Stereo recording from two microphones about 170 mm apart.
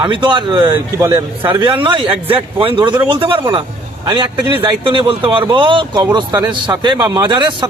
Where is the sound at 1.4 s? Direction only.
25° right (ahead or behind).